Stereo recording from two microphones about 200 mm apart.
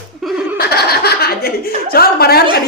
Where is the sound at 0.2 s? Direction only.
Centre (ahead or behind).